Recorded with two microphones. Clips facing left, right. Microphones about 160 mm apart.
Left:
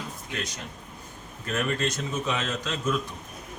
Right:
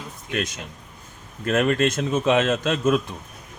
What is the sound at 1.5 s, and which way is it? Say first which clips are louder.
Speech: right 8 dB; 80° right.